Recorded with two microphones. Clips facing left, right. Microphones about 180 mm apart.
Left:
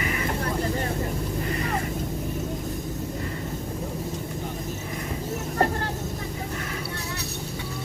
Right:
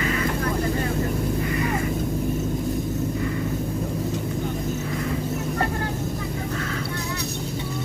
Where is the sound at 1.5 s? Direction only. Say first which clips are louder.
Right 3 dB; 40° left (ahead or behind).